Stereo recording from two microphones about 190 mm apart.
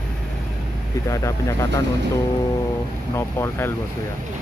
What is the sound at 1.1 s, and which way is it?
Speech, 15° left (ahead or behind).